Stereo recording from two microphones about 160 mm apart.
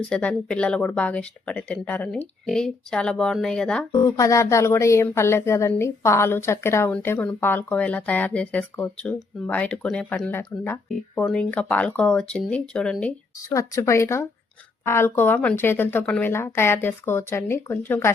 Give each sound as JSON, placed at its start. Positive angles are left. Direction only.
{"t": 0.1, "sound": "speech", "side_deg": 5}
{"t": 4.2, "sound": "a woman's voice", "side_deg": 20}
{"t": 13.5, "sound": "a woman's voice", "side_deg": 20}